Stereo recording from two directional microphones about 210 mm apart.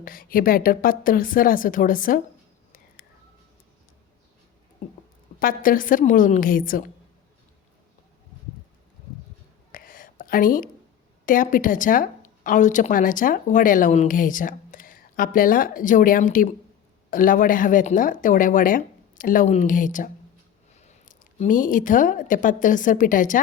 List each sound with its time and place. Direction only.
0.0 s speech: 40° left (ahead or behind)
5.4 s speech: 40° left (ahead or behind)
9.7 s a sound: 40° left (ahead or behind)
11.3 s speech: 40° left (ahead or behind)